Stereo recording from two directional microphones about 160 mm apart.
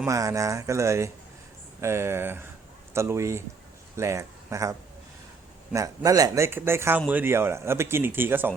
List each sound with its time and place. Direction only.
0.0 s speech: 20° right (ahead or behind)